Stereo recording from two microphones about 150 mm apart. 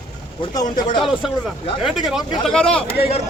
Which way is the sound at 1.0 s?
5° right (ahead or behind).